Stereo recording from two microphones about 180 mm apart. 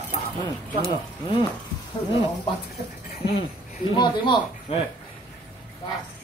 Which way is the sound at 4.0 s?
25° left (ahead or behind).